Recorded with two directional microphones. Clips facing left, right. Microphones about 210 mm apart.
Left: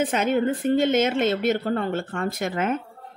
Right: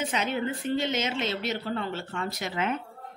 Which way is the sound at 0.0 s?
50° left (ahead or behind).